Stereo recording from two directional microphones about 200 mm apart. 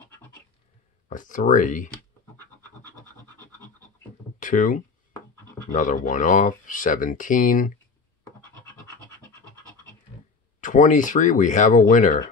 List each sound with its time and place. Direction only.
1.0 s speech: 40° left (ahead or behind)
4.4 s speech: 40° left (ahead or behind)
10.6 s speech: 40° left (ahead or behind)